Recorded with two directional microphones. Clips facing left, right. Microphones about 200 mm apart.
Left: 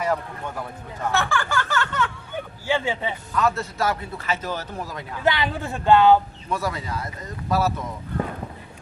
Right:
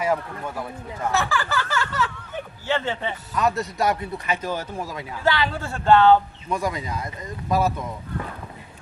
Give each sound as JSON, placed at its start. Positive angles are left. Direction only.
{"t": 0.0, "sound": "speech", "side_deg": -10}
{"t": 2.7, "sound": "a man's voice", "side_deg": 10}
{"t": 3.3, "sound": "speech", "side_deg": -15}
{"t": 5.2, "sound": "a man's voice", "side_deg": 20}
{"t": 6.5, "sound": "speech", "side_deg": -15}